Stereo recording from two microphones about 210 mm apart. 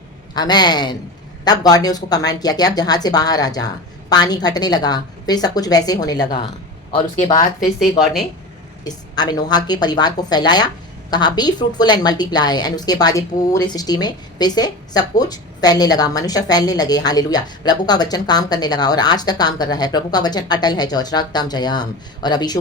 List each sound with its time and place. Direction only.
0.3 s a woman's voice: 20° left (ahead or behind)
8.8 s a woman's voice: 20° left (ahead or behind)